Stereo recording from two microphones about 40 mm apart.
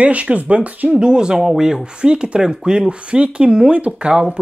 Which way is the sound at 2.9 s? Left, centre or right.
Right.